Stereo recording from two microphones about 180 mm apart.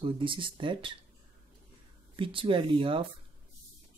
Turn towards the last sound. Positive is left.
turn(degrees=-30)  # may be behind; listen again after turning